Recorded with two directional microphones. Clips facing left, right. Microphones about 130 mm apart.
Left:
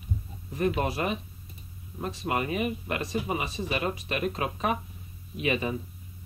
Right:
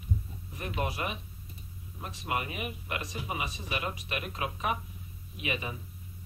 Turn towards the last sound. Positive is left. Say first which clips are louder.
# left 7 dB
turn(degrees=35)  # may be behind; listen again after turning